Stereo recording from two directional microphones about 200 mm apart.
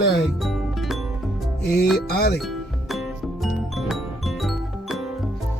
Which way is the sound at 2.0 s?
50° left (ahead or behind).